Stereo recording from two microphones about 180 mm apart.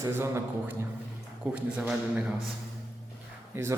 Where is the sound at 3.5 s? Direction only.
15° right (ahead or behind).